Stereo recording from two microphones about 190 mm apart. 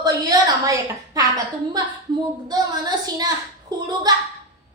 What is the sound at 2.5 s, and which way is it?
A woman's voice, 20° right (ahead or behind).